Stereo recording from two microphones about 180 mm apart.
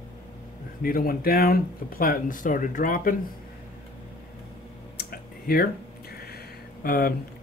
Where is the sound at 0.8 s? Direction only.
55° left (ahead or behind).